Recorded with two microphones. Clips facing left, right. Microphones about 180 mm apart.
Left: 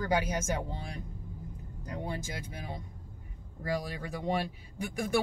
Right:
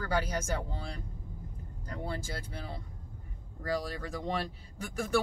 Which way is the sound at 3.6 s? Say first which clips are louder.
Even; 15° left (ahead or behind).